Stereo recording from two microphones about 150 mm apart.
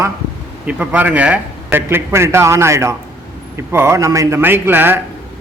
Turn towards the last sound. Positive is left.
turn(degrees=-15)  # may be behind; listen again after turning